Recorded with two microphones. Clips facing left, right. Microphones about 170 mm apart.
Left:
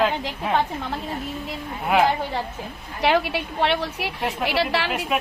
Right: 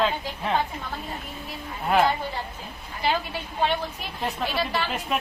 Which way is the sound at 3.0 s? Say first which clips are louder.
Left 6 dB; 75° left (ahead or behind).